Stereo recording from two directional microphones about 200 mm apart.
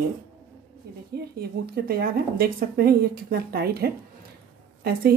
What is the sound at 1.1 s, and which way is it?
Speech, 50° right (ahead or behind).